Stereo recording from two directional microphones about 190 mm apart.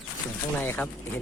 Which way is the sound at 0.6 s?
10° left (ahead or behind).